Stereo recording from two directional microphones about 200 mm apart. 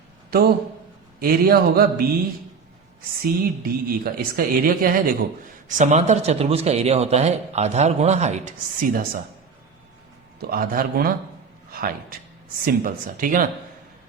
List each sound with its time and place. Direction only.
1.2 s a woman's voice: 50° right (ahead or behind)
3.2 s a woman's voice: 45° right (ahead or behind)
10.4 s a woman's voice: 45° right (ahead or behind)